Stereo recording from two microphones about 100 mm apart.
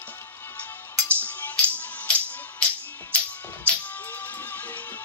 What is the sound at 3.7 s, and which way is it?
Music, 15° left (ahead or behind).